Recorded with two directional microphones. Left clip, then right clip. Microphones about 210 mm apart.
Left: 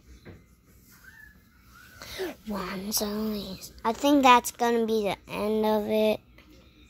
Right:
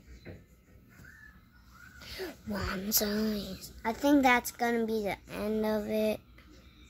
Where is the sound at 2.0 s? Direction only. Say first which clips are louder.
Left 6 dB; 15° left (ahead or behind).